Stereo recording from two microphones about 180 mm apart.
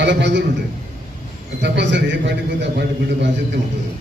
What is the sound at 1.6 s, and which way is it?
A man's voice, 75° right (ahead or behind).